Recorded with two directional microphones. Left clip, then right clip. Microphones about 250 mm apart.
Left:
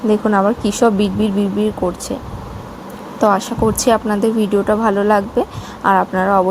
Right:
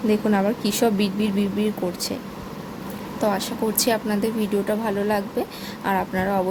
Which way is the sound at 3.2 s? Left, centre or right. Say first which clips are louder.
Left 9 dB; centre.